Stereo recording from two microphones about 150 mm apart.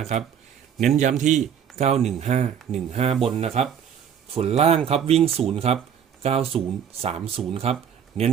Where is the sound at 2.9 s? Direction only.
45° right (ahead or behind).